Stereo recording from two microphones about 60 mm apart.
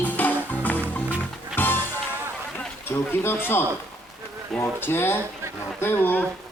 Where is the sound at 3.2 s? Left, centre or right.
Left.